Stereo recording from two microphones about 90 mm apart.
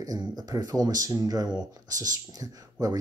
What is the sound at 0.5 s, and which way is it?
Speech, 45° right (ahead or behind).